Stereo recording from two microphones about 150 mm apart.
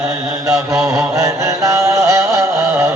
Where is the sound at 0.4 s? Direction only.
20° right (ahead or behind).